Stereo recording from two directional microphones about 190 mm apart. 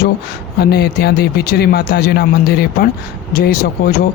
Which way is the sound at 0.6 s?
55° left (ahead or behind).